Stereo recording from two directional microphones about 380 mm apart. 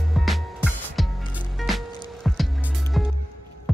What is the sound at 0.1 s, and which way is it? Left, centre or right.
Music, centre.